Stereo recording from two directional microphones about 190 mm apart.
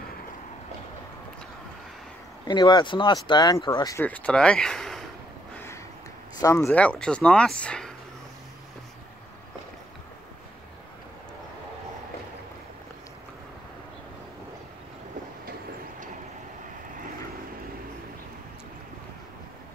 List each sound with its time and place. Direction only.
2.4 s speech: 25° left (ahead or behind); by 5.0 s centre (ahead or behind)
6.4 s speech: 15° left (ahead or behind)